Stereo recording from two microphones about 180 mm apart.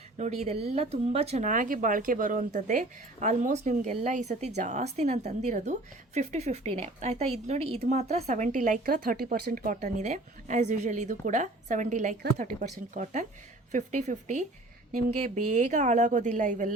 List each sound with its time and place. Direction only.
0.2 s a woman's voice: 35° right (ahead or behind)
15.5 s a woman's voice: 40° right (ahead or behind)